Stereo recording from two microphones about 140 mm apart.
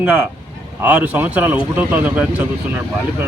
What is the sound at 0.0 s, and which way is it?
A man's voice, 15° right (ahead or behind).